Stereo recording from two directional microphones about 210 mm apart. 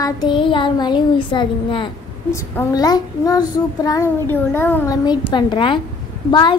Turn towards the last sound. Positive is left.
turn(degrees=20)  # may be behind; listen again after turning